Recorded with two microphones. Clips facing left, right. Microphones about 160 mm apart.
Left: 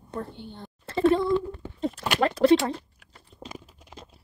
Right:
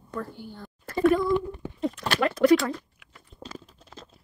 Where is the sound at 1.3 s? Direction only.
20° right (ahead or behind).